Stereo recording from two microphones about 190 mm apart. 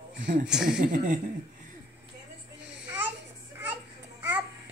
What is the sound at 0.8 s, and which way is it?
Speech, 45° right (ahead or behind).